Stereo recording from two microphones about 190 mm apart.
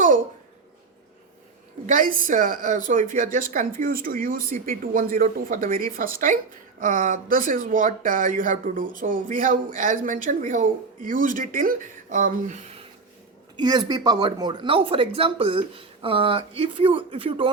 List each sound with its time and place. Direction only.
1.9 s a woman's voice: 45° right (ahead or behind)
13.6 s speech: 20° right (ahead or behind)